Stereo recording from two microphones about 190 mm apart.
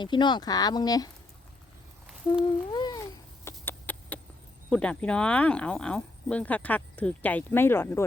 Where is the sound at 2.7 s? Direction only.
20° left (ahead or behind).